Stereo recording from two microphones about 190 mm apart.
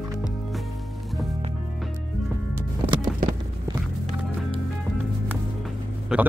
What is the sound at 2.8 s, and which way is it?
Music, 25° right (ahead or behind).